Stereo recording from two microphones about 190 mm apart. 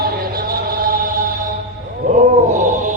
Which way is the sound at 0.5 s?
50° right (ahead or behind).